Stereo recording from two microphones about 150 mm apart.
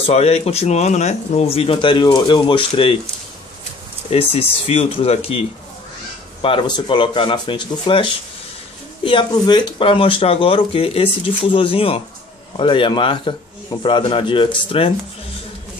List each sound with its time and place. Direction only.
0.0 s speech: 45° left (ahead or behind)
4.1 s speech: 40° left (ahead or behind)
6.4 s speech: 35° left (ahead or behind)